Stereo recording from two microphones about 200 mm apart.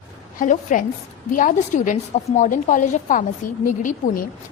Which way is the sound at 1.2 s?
40° left (ahead or behind).